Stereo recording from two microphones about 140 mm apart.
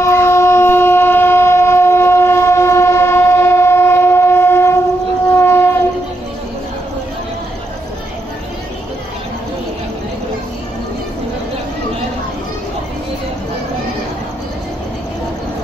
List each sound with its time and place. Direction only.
0.0 s train: 20° left (ahead or behind)